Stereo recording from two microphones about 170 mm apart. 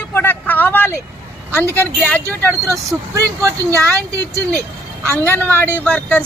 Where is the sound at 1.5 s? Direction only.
15° right (ahead or behind).